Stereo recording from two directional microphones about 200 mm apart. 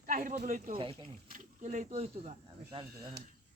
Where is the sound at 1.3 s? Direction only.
35° right (ahead or behind).